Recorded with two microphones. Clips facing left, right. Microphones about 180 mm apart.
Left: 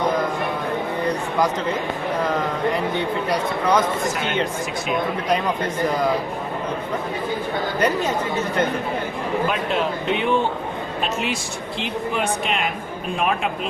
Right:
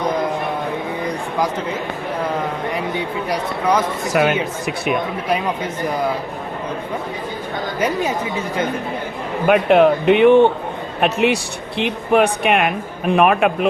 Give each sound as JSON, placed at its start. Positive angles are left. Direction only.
{"t": 2.7, "sound": "speech", "side_deg": -10}
{"t": 4.1, "sound": "speech", "side_deg": -90}
{"t": 7.8, "sound": "speech", "side_deg": -10}
{"t": 9.5, "sound": "speech", "side_deg": -65}